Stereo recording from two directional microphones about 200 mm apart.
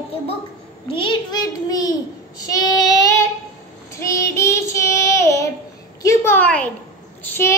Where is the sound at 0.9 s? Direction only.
25° left (ahead or behind).